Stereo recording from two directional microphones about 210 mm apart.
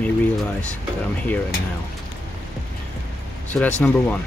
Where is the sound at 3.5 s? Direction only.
Centre (ahead or behind).